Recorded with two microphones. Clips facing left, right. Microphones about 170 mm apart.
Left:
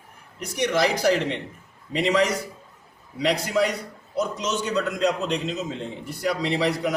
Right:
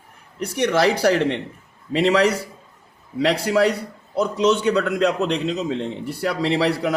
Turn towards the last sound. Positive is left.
turn(degrees=-60)  # may be behind; listen again after turning